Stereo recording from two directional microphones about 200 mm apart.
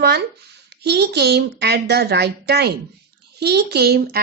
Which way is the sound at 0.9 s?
55° right (ahead or behind).